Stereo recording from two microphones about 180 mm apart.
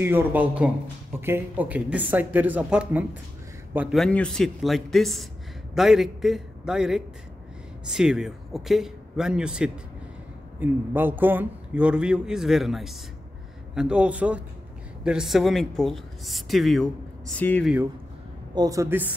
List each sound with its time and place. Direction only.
0.0 s speech: 10° right (ahead or behind)
4.0 s a man's voice: 5° left (ahead or behind)
18.5 s speech: 20° right (ahead or behind)